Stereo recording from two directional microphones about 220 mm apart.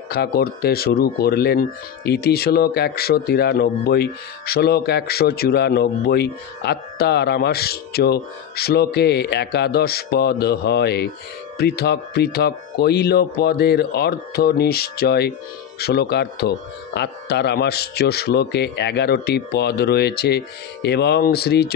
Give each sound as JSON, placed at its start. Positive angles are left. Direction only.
{"t": 0.1, "sound": "speech", "side_deg": 45}